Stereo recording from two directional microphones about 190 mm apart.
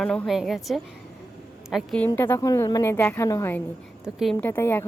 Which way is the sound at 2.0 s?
10° left (ahead or behind).